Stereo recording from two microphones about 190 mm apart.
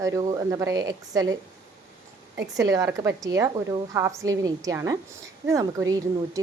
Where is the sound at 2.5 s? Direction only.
20° right (ahead or behind).